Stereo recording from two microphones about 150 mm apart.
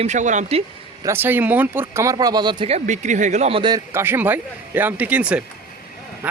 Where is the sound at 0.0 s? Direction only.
50° right (ahead or behind).